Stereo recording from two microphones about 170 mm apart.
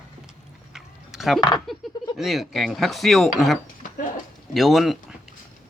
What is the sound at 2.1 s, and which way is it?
Speech, centre (ahead or behind).